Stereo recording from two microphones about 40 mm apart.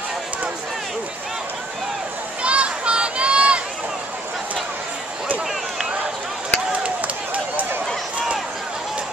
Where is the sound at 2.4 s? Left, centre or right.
Right.